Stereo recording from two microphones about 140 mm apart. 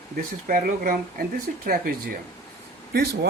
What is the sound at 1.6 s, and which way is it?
Speech, 90° right.